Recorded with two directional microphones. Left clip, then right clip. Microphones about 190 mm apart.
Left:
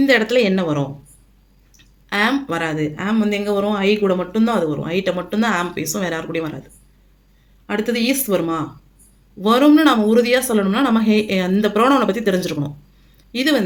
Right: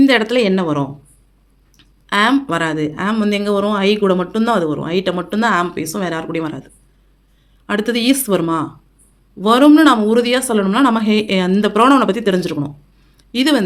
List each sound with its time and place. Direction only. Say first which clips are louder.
0.0 s speech: right 2 dB; 25° right (ahead or behind)
7.7 s speech: right 3 dB; 35° right (ahead or behind)
13.1 s a sound: right 3 dB; 30° right (ahead or behind)